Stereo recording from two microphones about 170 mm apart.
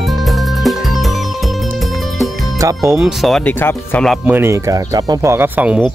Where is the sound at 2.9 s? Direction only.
Centre (ahead or behind).